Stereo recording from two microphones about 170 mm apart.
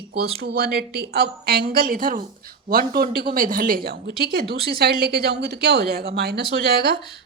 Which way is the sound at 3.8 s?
70° right (ahead or behind).